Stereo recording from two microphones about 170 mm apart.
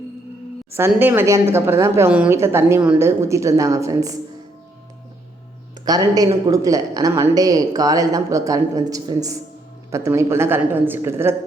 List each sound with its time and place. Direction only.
0.7 s a woman's voice: 15° right (ahead or behind)
5.8 s a woman's voice: 20° right (ahead or behind)